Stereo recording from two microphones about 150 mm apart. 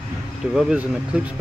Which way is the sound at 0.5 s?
5° right (ahead or behind).